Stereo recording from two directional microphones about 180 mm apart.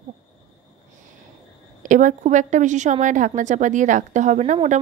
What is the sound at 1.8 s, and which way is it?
A woman's voice, 45° right (ahead or behind).